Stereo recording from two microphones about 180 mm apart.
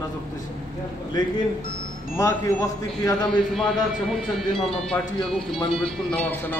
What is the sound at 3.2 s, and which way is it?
Speech, centre (ahead or behind).